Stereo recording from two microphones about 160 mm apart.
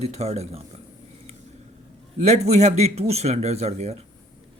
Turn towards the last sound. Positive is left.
turn(degrees=-40)  # may be behind; listen again after turning